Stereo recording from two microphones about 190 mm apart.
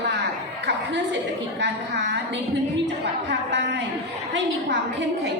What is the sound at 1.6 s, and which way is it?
A woman's voice, 65° right (ahead or behind).